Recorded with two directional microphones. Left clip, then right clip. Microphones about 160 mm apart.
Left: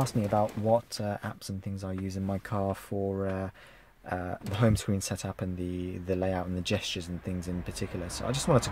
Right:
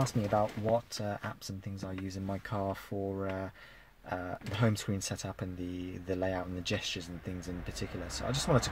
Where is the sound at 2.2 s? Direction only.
30° left (ahead or behind).